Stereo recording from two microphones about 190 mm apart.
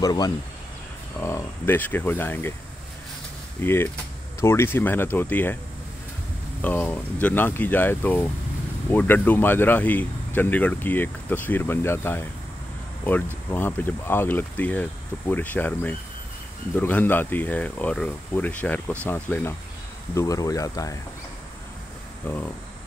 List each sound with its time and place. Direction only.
0.0 s speech: 20° left (ahead or behind)
3.6 s speech: 10° left (ahead or behind)
6.6 s speech: 10° left (ahead or behind)
22.2 s speech: 10° left (ahead or behind)